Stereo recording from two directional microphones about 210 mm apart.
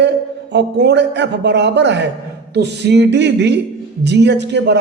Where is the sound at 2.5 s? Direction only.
55° right (ahead or behind).